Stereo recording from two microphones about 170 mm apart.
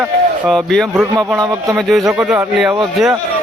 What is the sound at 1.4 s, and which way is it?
Speech, 20° right (ahead or behind).